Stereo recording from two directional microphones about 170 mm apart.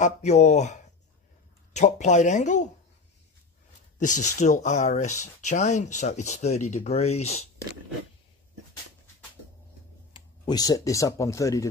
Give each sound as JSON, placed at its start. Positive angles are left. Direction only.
{"t": 0.0, "sound": "speech", "side_deg": 45}
{"t": 4.0, "sound": "speech", "side_deg": 45}
{"t": 10.1, "sound": "speech", "side_deg": 25}